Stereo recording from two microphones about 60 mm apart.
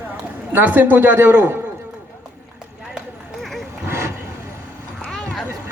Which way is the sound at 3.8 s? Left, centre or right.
Right.